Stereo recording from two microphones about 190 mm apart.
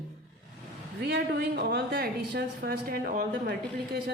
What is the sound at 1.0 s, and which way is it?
A woman's voice, 60° right (ahead or behind).